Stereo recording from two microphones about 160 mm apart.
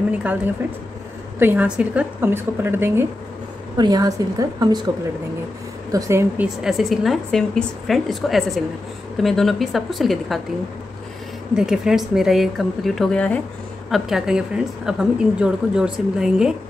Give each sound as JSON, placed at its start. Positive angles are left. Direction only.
{"t": 1.4, "sound": "a woman's voice", "side_deg": -10}
{"t": 3.7, "sound": "a woman's voice", "side_deg": -25}
{"t": 11.5, "sound": "a woman's voice", "side_deg": -5}